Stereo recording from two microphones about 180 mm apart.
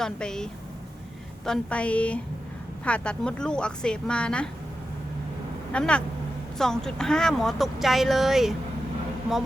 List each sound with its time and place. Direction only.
0.0 s a woman's voice: 5° left (ahead or behind)
5.7 s speech: 5° left (ahead or behind)